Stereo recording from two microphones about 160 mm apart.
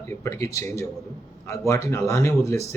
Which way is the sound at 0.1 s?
15° left (ahead or behind).